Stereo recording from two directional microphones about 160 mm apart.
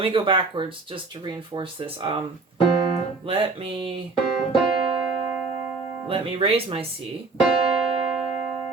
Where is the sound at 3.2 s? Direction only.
35° right (ahead or behind).